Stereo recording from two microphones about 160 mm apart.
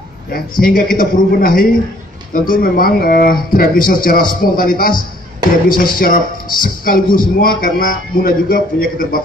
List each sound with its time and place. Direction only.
0.3 s speech: 65° left (ahead or behind)